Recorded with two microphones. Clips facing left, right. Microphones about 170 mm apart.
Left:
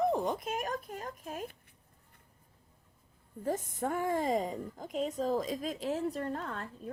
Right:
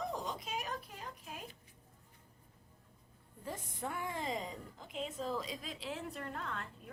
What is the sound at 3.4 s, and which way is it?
A woman's voice, 45° left (ahead or behind).